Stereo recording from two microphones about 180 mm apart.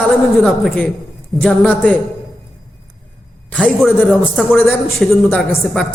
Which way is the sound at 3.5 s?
10° left (ahead or behind).